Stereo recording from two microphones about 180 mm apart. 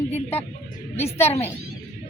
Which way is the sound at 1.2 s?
35° left (ahead or behind).